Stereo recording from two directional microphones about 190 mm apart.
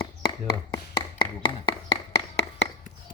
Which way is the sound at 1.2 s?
25° left (ahead or behind).